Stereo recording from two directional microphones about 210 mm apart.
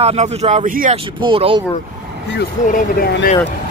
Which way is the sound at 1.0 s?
25° right (ahead or behind).